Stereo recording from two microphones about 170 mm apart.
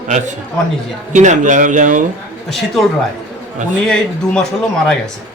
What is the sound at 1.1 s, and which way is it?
Speech, 45° right (ahead or behind).